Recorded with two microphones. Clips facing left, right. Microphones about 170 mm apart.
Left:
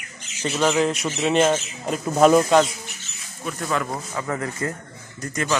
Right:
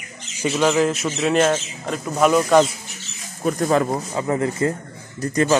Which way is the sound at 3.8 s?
25° right (ahead or behind).